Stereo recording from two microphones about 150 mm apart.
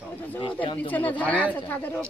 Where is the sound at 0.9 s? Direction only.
10° left (ahead or behind).